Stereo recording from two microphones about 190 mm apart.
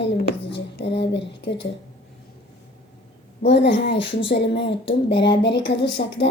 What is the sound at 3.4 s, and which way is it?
A child's voice, 65° left (ahead or behind).